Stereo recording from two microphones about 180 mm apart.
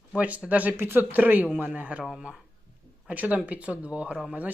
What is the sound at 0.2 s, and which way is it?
Speech, 10° right (ahead or behind).